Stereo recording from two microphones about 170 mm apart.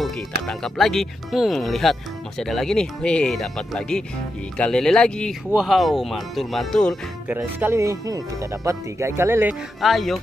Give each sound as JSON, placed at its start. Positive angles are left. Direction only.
{"t": 0.0, "sound": "speech", "side_deg": 0}
{"t": 7.2, "sound": "speech", "side_deg": -10}
{"t": 9.8, "sound": "speech", "side_deg": 0}